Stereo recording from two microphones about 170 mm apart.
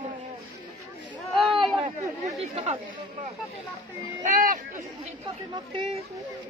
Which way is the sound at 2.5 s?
35° right (ahead or behind).